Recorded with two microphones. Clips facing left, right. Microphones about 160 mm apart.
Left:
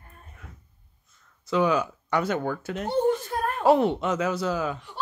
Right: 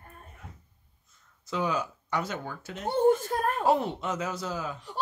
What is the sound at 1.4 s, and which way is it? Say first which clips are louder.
Speech: left 7 dB; 75° left (ahead or behind).